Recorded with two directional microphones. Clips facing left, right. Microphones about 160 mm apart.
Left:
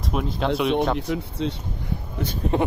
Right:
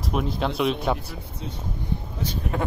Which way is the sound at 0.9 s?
75° left (ahead or behind).